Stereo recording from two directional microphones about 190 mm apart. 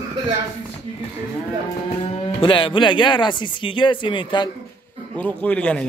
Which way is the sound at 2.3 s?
25° left (ahead or behind).